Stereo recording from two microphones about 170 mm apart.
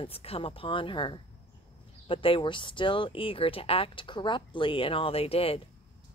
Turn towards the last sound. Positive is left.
turn(degrees=35)  # may be behind; listen again after turning